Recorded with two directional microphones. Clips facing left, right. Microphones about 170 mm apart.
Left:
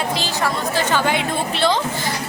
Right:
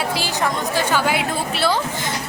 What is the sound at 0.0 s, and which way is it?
A woman's voice, 10° right (ahead or behind).